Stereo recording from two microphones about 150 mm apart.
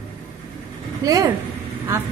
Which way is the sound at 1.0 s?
25° right (ahead or behind).